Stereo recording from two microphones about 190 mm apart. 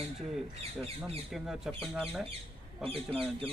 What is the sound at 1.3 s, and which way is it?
Speech, centre (ahead or behind).